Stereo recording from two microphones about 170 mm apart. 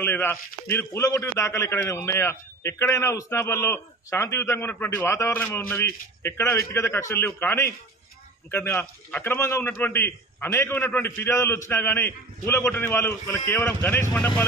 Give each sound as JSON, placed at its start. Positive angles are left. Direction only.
{"t": 0.0, "sound": "a man's voice", "side_deg": 15}